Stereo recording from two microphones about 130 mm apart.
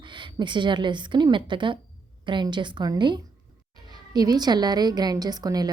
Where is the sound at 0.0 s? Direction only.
35° right (ahead or behind).